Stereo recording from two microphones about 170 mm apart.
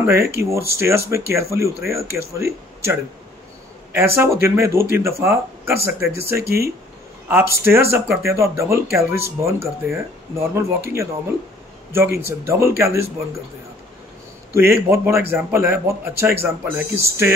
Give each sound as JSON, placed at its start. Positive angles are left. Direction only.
{"t": 0.0, "sound": "a man's voice", "side_deg": -15}
{"t": 14.5, "sound": "a man's voice", "side_deg": -15}